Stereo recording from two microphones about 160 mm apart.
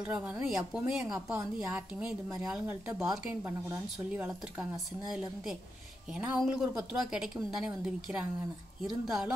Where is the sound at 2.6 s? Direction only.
15° right (ahead or behind).